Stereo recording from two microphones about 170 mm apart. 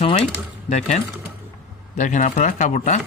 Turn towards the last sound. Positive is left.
turn(degrees=45)  # may be behind; listen again after turning